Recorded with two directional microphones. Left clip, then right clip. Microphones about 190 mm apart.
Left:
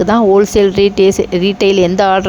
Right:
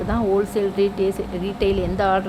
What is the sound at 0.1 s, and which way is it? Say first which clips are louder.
Speech: left 10 dB; 40° left (ahead or behind).